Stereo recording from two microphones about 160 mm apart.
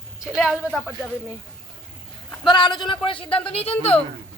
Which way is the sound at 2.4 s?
30° left (ahead or behind).